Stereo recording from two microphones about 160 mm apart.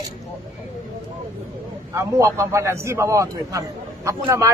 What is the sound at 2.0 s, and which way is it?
A man's voice, 15° right (ahead or behind).